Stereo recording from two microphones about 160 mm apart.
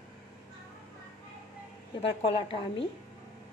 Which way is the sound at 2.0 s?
35° left (ahead or behind).